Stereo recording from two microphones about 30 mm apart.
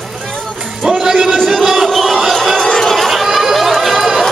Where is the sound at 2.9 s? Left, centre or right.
Centre.